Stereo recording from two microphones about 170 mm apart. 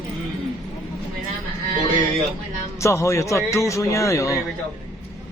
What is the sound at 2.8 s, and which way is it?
A man's voice, 15° left (ahead or behind).